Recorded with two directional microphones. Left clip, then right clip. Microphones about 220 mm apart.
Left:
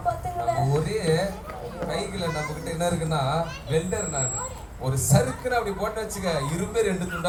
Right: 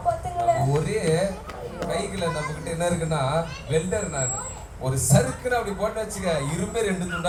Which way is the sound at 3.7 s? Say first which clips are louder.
Right 2 dB; 15° left (ahead or behind).